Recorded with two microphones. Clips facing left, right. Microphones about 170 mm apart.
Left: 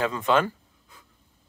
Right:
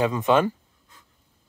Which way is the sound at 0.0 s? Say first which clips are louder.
Right 3 dB; 15° right (ahead or behind).